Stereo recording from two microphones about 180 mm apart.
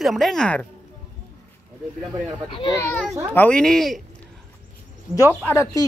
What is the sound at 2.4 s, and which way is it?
Speech, 30° left (ahead or behind).